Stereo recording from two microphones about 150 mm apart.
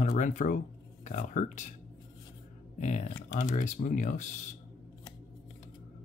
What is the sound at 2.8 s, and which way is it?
Speech, 50° left (ahead or behind).